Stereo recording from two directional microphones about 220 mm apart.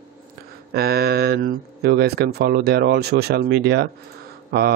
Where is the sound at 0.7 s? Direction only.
45° right (ahead or behind).